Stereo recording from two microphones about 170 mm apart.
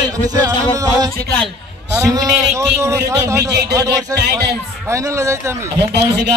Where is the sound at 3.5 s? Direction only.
80° right.